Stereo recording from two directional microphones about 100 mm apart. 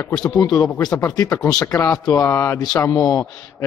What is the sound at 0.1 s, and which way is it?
A man's voice, 40° left (ahead or behind).